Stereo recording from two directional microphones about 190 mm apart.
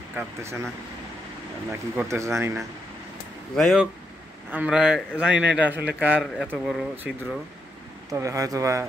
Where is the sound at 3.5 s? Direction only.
Centre (ahead or behind).